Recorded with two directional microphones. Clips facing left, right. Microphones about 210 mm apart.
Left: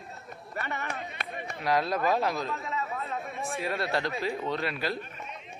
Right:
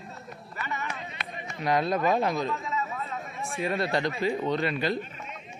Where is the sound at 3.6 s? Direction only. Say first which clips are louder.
Right 4 dB; centre (ahead or behind).